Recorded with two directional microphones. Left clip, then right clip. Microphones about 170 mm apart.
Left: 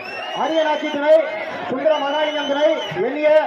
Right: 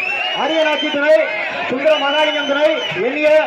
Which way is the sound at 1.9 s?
40° right (ahead or behind).